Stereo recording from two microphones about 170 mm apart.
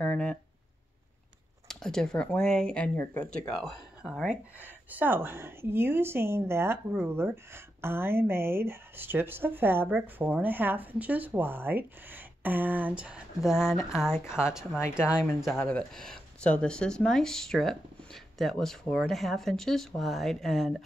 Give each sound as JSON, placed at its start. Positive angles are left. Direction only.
{"t": 0.0, "sound": "speech", "side_deg": 5}
{"t": 1.7, "sound": "speech", "side_deg": 5}
{"t": 13.6, "sound": "speech", "side_deg": 15}
{"t": 14.5, "sound": "speech", "side_deg": -5}